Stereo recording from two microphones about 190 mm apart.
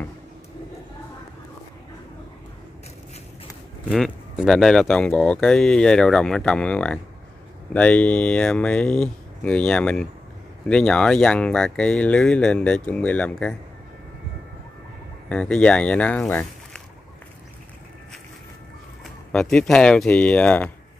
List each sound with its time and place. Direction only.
3.9 s speech: centre (ahead or behind)
15.2 s speech: 5° left (ahead or behind)
19.0 s speech: centre (ahead or behind)